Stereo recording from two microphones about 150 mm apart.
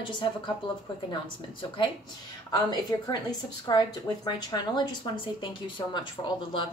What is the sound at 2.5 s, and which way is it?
A woman's voice, 25° left (ahead or behind).